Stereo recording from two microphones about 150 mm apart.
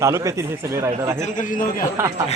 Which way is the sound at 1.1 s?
55° left (ahead or behind).